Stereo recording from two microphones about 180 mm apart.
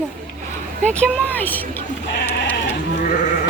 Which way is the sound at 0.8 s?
5° left (ahead or behind).